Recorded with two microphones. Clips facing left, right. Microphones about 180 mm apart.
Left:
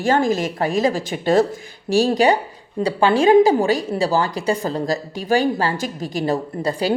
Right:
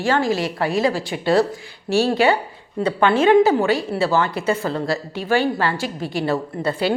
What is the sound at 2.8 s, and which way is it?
A woman's voice, 35° left (ahead or behind).